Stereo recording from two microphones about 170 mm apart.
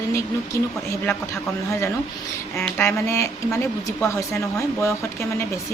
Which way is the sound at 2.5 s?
10° left (ahead or behind).